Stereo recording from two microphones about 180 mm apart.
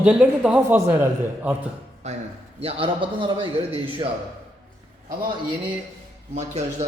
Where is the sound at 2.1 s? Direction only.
40° right (ahead or behind).